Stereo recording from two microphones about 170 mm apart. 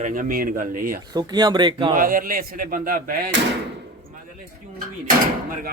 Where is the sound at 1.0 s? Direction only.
25° right (ahead or behind).